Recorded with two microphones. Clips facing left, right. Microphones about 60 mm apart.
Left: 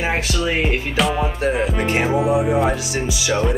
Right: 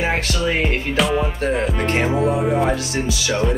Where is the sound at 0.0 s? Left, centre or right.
Centre.